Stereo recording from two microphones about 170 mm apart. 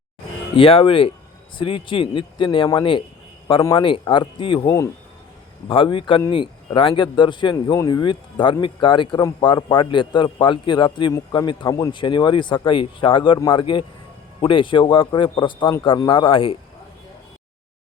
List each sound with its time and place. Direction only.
0.5 s a man's voice: 30° left (ahead or behind)